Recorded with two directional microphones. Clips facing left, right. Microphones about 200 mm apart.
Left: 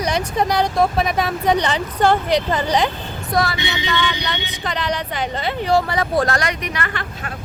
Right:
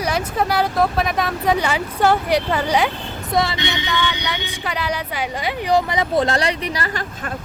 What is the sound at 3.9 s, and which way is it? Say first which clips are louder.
A woman's voice: left 1 dB; 10° right (ahead or behind).